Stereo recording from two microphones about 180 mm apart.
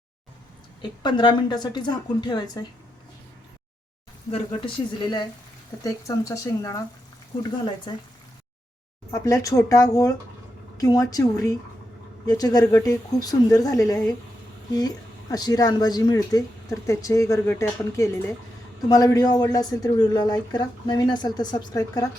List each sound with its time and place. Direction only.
0.8 s speech: 25° left (ahead or behind)
4.3 s speech: 30° left (ahead or behind)
9.1 s speech: 20° left (ahead or behind)